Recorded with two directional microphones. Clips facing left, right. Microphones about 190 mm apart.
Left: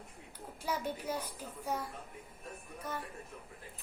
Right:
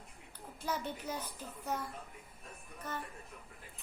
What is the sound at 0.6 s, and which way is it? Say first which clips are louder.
Music: left 2 dB; 10° left (ahead or behind).